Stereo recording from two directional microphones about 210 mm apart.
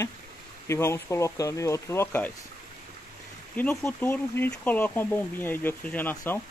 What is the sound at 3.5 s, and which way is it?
Speech, 10° left (ahead or behind).